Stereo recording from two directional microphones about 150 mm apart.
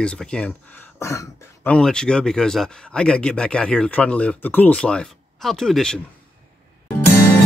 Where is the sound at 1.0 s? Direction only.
20° left (ahead or behind).